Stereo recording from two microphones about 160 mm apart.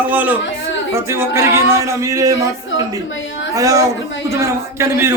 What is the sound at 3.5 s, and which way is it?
A man's voice, 20° right (ahead or behind).